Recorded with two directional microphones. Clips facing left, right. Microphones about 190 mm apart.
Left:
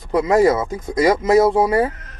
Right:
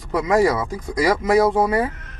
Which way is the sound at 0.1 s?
25° left (ahead or behind).